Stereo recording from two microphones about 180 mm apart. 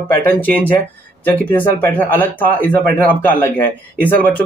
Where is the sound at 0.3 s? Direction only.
10° left (ahead or behind).